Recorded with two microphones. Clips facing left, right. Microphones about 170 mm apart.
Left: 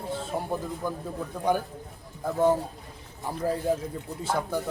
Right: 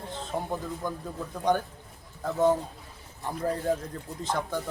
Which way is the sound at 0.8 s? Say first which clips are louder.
Left 1 dB; 10° left (ahead or behind).